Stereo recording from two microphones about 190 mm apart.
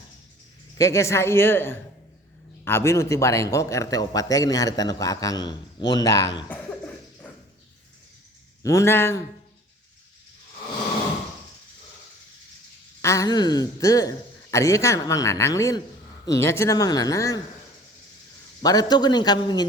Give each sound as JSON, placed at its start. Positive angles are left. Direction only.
{"t": 0.8, "sound": "a man's voice", "side_deg": 15}
{"t": 8.6, "sound": "a man's voice", "side_deg": 15}
{"t": 13.0, "sound": "a man's voice", "side_deg": 15}
{"t": 18.6, "sound": "a man's voice", "side_deg": 20}